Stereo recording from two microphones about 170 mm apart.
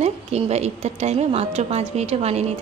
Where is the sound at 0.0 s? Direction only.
40° right (ahead or behind).